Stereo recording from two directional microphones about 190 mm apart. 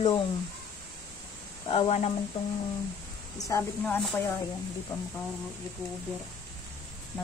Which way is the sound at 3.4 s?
15° left (ahead or behind).